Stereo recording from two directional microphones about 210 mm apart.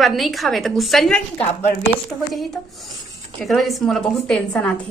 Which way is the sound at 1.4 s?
30° left (ahead or behind).